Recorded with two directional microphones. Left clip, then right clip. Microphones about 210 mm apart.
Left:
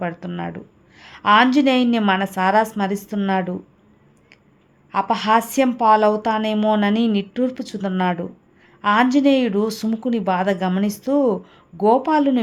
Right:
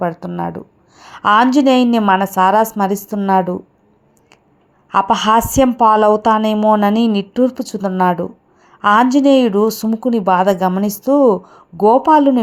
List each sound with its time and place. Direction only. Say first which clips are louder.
0.0 s a woman's voice: right 7 dB; 15° right (ahead or behind)
4.9 s a woman's voice: right 5 dB; 20° right (ahead or behind)
6.6 s speech: right 6 dB; centre (ahead or behind)
6.8 s a woman's voice: right 5 dB; 15° right (ahead or behind)
7.8 s speech: right 7 dB; centre (ahead or behind)
8.8 s a woman's voice: right 5 dB; 15° right (ahead or behind)